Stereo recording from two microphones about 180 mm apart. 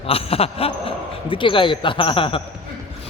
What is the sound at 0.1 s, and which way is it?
Speech, 35° left (ahead or behind).